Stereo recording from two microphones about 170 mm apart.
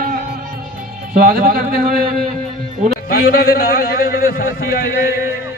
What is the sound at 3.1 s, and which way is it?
A man's voice, 65° left (ahead or behind).